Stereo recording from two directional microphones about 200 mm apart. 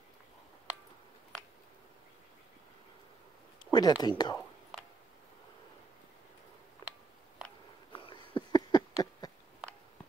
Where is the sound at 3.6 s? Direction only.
20° left (ahead or behind).